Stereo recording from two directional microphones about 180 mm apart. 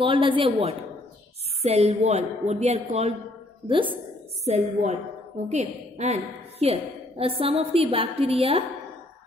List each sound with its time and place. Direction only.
0.0 s a woman's voice: 30° right (ahead or behind)